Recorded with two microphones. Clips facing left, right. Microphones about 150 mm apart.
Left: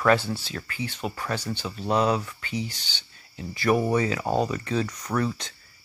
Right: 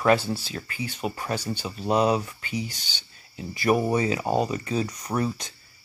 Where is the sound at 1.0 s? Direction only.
15° right (ahead or behind).